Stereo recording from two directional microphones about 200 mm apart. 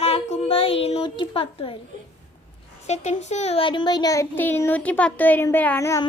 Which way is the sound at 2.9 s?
35° left (ahead or behind).